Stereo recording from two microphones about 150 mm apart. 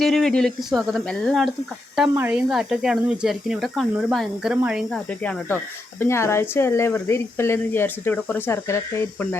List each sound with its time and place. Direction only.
0.0 s speech: centre (ahead or behind)
6.0 s speech: 15° left (ahead or behind)